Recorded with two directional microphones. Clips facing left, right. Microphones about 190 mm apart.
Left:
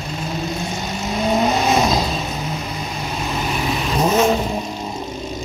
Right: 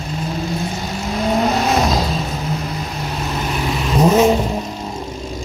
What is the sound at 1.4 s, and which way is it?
Vehicle, 15° left (ahead or behind).